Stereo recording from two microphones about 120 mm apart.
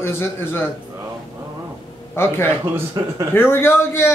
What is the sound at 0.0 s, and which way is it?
Speech, 20° left (ahead or behind).